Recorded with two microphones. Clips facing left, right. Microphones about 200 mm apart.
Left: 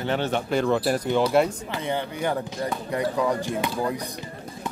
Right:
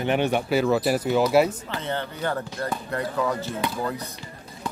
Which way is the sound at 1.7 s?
15° left (ahead or behind).